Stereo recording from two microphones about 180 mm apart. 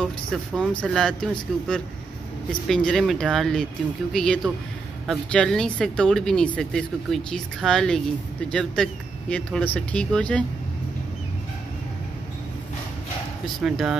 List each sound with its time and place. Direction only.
0.0 s speech: 5° left (ahead or behind)
13.6 s speech: centre (ahead or behind)